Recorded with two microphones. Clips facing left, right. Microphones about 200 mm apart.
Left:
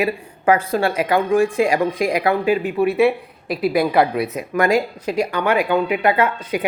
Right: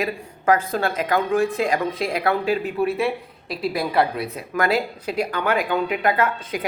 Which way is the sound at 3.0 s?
60° left (ahead or behind).